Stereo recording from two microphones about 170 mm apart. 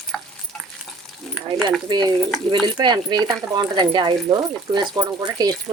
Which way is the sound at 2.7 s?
25° right (ahead or behind).